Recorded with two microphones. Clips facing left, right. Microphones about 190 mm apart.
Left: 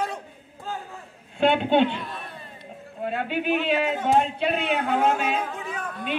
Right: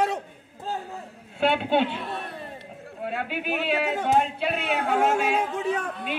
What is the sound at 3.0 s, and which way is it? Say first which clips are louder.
A man's voice: left 3 dB; 5° right (ahead or behind).